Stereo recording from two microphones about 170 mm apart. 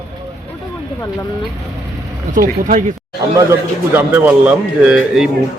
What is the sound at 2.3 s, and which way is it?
Speech, 50° right (ahead or behind).